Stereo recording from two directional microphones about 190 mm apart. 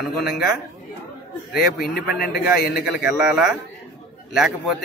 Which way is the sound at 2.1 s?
55° left (ahead or behind).